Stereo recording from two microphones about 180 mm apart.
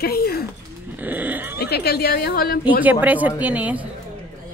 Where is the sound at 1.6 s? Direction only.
60° left (ahead or behind).